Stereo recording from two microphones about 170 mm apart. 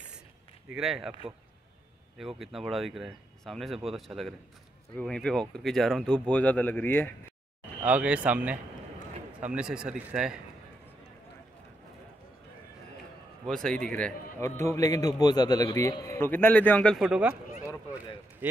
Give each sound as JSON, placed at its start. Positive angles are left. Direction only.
{"t": 0.7, "sound": "speech", "side_deg": -5}
{"t": 2.1, "sound": "speech", "side_deg": 0}
{"t": 7.8, "sound": "speech", "side_deg": -5}
{"t": 13.5, "sound": "a man's voice", "side_deg": 5}
{"t": 17.0, "sound": "speech", "side_deg": -5}
{"t": 17.6, "sound": "a sound", "side_deg": -10}